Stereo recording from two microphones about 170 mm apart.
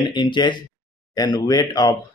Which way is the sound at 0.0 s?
25° left (ahead or behind).